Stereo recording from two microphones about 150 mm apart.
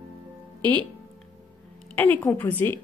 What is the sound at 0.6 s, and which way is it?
Speech, 30° right (ahead or behind).